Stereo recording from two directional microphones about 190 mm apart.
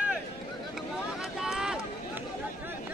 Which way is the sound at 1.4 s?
Centre (ahead or behind).